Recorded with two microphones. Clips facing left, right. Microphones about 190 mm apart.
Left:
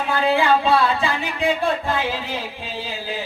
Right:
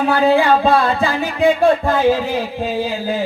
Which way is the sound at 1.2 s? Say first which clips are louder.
Right 8 dB; 45° right (ahead or behind).